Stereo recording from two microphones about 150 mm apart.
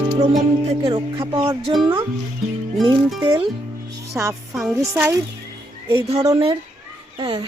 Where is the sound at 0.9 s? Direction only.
35° right (ahead or behind).